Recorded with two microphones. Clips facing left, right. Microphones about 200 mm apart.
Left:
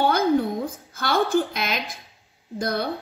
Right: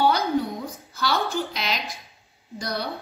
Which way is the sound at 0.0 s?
50° left (ahead or behind).